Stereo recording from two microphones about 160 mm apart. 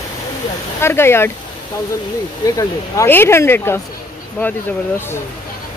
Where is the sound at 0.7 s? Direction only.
15° left (ahead or behind).